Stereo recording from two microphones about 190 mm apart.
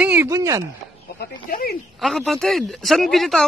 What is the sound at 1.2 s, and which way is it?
Speech, 50° left (ahead or behind).